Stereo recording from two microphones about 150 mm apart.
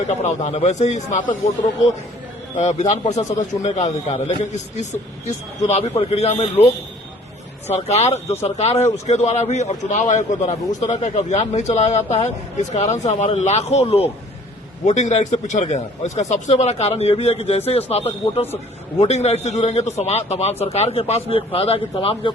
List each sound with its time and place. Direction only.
0.1 s a man's voice: 50° left (ahead or behind)
2.6 s a man's voice: 50° left (ahead or behind)
7.7 s a man's voice: 45° left (ahead or behind)